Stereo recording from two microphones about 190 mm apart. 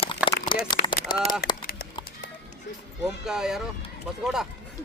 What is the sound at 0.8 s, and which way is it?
Speech, 50° left (ahead or behind).